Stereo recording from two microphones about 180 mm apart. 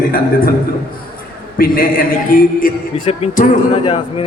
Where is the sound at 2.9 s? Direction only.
35° left (ahead or behind).